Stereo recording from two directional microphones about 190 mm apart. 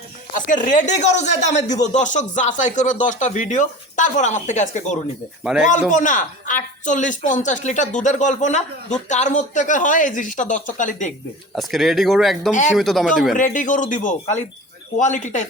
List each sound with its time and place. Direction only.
0.3 s speech: 45° left (ahead or behind)
5.4 s speech: 5° right (ahead or behind)
5.9 s speech: 40° left (ahead or behind)
11.5 s speech: centre (ahead or behind)
12.5 s speech: 40° left (ahead or behind)
12.7 s speech: centre (ahead or behind)
13.3 s speech: 45° left (ahead or behind)